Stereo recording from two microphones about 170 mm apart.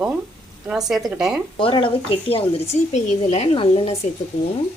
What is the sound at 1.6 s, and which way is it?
Speech, 30° left (ahead or behind).